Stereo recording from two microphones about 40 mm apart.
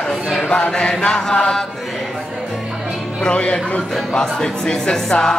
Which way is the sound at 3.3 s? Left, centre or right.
Left.